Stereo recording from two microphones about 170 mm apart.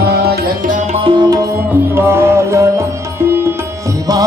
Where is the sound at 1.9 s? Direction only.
15° right (ahead or behind).